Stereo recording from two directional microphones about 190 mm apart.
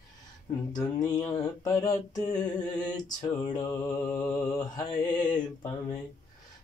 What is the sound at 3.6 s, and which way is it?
Mantra, 20° left (ahead or behind).